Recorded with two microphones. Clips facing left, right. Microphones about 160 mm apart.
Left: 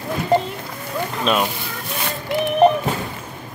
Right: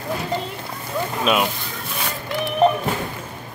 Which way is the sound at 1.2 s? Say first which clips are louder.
Even; 5° right (ahead or behind).